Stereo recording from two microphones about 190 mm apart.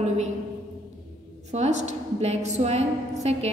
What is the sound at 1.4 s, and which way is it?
A woman's voice, 35° right (ahead or behind).